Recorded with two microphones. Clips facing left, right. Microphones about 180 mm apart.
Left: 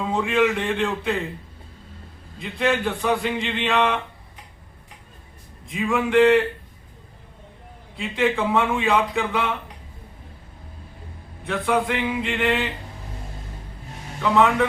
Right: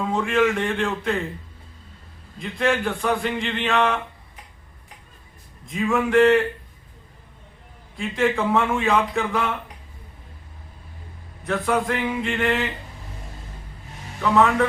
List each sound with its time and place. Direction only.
0.1 s a man's voice: centre (ahead or behind)
2.4 s a man's voice: centre (ahead or behind)
5.9 s a man's voice: 5° left (ahead or behind)
8.1 s a man's voice: centre (ahead or behind)
11.5 s a man's voice: centre (ahead or behind)
14.2 s a man's voice: centre (ahead or behind)